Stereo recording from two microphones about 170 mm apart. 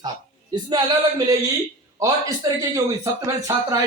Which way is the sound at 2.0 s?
20° right (ahead or behind).